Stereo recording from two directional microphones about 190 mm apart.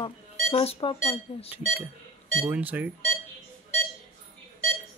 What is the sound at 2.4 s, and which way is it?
Speech, 10° right (ahead or behind).